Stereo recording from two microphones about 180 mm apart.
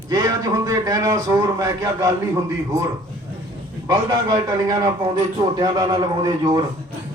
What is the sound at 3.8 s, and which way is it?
A man's voice, 20° right (ahead or behind).